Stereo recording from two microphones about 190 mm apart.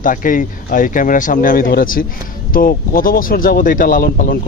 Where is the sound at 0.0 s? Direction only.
45° left (ahead or behind).